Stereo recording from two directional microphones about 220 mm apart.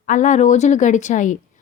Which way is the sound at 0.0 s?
35° left (ahead or behind).